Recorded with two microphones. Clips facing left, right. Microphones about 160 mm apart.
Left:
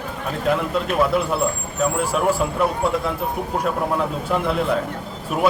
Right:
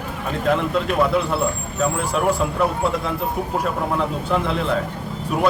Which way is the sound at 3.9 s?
5° left (ahead or behind).